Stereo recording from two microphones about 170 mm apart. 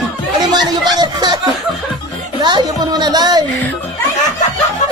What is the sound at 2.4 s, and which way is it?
Speech, 25° right (ahead or behind).